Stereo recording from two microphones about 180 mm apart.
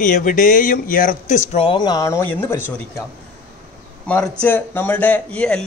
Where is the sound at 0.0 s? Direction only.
50° left (ahead or behind).